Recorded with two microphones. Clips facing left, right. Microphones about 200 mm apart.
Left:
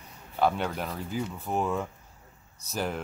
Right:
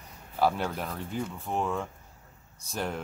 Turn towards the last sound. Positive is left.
turn(degrees=0)  # may be behind; listen again after turning